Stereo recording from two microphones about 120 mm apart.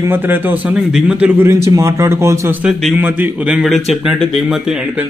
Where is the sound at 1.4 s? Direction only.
25° right (ahead or behind).